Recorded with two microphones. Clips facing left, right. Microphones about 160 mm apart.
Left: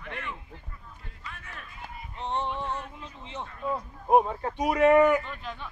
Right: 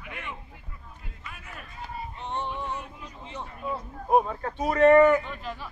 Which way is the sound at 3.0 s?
20° left (ahead or behind).